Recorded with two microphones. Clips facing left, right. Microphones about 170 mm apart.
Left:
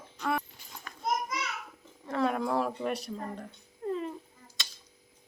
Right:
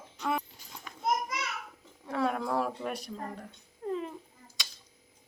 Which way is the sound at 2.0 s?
5° right (ahead or behind).